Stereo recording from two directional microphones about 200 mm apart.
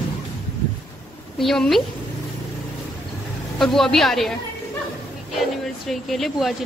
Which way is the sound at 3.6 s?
Centre (ahead or behind).